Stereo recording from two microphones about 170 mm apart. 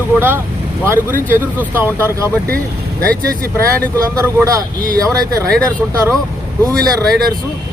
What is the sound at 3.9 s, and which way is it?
Speech, 20° right (ahead or behind).